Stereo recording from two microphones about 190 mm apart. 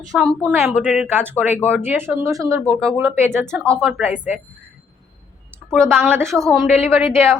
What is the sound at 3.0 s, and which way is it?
Speech, 10° right (ahead or behind).